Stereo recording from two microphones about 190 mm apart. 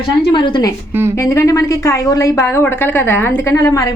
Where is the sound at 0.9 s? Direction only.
10° right (ahead or behind).